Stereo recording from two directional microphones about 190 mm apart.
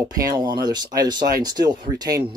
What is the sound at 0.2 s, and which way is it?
Speech, 20° right (ahead or behind).